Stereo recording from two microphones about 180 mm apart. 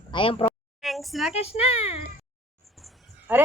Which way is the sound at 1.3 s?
35° left (ahead or behind).